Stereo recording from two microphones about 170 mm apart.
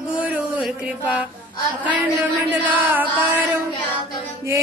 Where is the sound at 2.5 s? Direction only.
10° right (ahead or behind).